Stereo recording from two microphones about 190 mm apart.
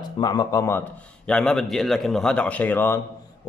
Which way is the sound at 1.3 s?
5° left (ahead or behind).